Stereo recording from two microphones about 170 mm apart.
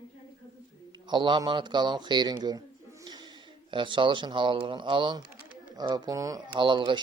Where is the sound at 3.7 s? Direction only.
30° right (ahead or behind).